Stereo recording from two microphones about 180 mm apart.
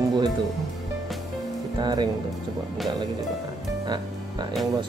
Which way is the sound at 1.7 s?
25° right (ahead or behind).